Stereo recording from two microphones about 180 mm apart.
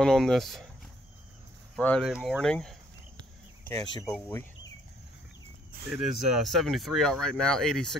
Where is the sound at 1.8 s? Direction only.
10° left (ahead or behind).